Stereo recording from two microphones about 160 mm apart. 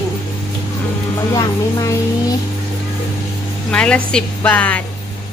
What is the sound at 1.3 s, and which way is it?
Speech, 20° left (ahead or behind).